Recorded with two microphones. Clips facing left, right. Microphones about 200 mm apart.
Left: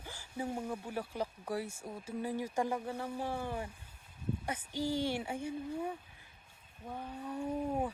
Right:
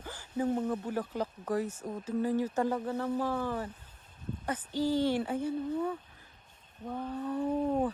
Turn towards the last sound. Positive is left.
turn(degrees=10)  # may be behind; listen again after turning